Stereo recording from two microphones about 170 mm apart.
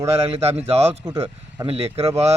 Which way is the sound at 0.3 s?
35° right (ahead or behind).